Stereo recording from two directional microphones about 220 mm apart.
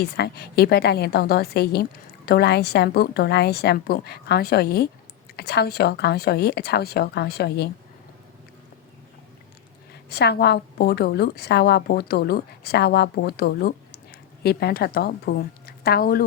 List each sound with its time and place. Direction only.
0.0 s a woman's voice: 45° left (ahead or behind)
10.1 s a woman's voice: 45° left (ahead or behind)